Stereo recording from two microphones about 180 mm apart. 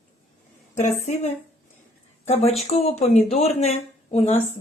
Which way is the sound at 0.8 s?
40° left (ahead or behind).